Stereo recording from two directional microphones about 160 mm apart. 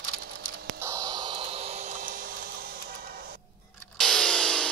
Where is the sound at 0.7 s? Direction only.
20° right (ahead or behind); by 3.4 s 70° right (ahead or behind).